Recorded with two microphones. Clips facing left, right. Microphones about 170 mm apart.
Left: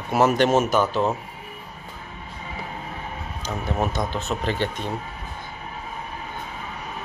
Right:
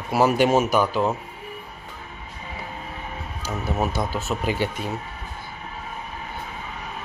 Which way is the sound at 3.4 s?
5° right (ahead or behind).